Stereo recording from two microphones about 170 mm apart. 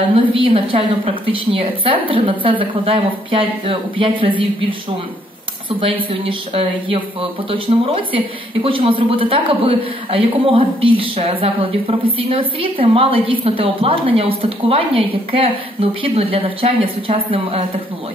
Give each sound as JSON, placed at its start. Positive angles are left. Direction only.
{"t": 0.1, "sound": "a man's voice", "side_deg": -30}
{"t": 6.2, "sound": "a man's voice", "side_deg": -35}